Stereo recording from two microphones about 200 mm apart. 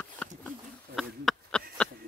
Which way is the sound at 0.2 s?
5° left (ahead or behind).